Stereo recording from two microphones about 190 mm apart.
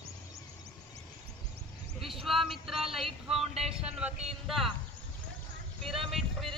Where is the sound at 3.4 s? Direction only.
30° right (ahead or behind).